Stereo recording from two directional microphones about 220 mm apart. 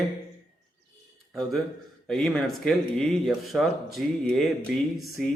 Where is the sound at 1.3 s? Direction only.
Centre (ahead or behind).